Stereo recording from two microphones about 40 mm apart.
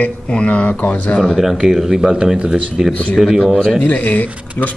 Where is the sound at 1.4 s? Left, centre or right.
Centre; by 2.6 s right.